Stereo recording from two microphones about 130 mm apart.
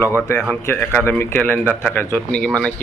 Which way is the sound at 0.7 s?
20° left (ahead or behind).